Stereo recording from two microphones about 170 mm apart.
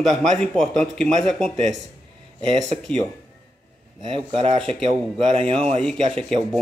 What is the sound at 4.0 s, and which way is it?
Speech, 35° right (ahead or behind).